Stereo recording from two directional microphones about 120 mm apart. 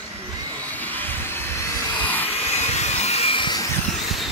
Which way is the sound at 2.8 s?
65° left (ahead or behind).